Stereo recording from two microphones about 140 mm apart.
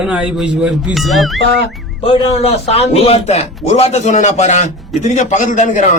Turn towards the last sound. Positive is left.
turn(degrees=65)  # may be behind; listen again after turning